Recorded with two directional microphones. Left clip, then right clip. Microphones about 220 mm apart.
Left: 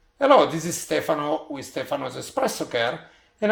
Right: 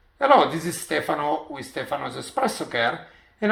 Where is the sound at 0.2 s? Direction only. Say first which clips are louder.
Even; 40° left (ahead or behind).